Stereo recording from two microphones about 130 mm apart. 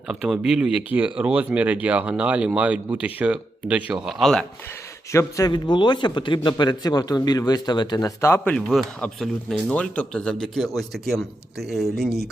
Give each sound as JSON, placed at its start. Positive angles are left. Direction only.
{"t": 0.1, "sound": "speech", "side_deg": -5}
{"t": 4.0, "sound": "speech", "side_deg": 5}
{"t": 5.1, "sound": "a man's voice", "side_deg": 30}
{"t": 8.5, "sound": "speech", "side_deg": 0}